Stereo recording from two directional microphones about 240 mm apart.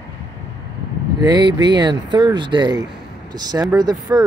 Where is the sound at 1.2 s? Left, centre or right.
Centre.